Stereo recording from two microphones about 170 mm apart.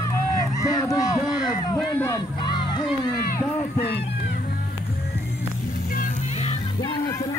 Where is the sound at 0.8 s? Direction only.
20° left (ahead or behind).